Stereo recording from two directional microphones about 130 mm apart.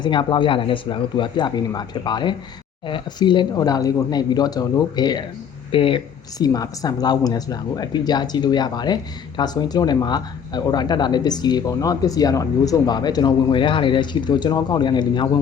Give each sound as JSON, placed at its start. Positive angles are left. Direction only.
{"t": 0.0, "sound": "speech", "side_deg": 40}
{"t": 6.4, "sound": "speech", "side_deg": 30}